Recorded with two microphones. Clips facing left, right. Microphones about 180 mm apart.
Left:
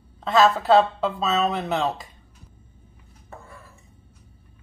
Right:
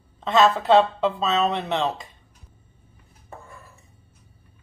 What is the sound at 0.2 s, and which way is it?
Speech, centre (ahead or behind).